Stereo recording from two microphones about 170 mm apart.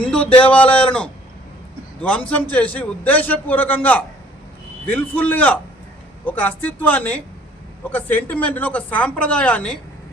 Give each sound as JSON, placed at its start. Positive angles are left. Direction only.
{"t": 0.0, "sound": "a man's voice", "side_deg": 5}